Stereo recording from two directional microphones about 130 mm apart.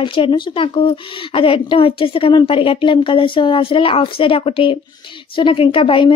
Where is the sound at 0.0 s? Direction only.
40° left (ahead or behind).